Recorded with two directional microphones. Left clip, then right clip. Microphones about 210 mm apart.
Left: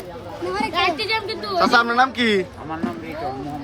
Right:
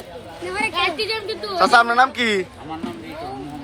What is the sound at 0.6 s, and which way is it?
Speech, 20° right (ahead or behind).